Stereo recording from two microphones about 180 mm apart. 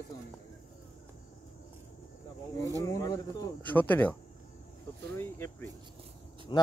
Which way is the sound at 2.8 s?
20° left (ahead or behind).